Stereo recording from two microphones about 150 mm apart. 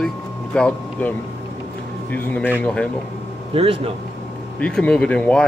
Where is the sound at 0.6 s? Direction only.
10° left (ahead or behind).